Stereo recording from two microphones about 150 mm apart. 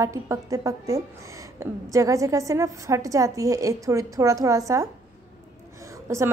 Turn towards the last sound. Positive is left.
turn(degrees=-15)  # may be behind; listen again after turning